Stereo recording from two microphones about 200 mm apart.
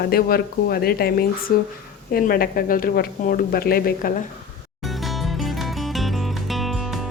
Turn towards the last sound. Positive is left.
turn(degrees=0)  # may be behind; listen again after turning